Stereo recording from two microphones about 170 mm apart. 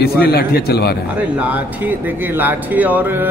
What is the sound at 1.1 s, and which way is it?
Speech, 10° right (ahead or behind).